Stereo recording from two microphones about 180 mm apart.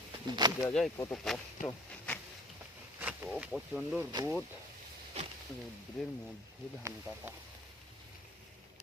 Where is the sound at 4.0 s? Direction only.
20° right (ahead or behind).